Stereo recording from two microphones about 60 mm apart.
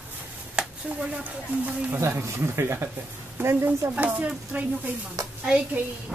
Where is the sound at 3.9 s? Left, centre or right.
Right.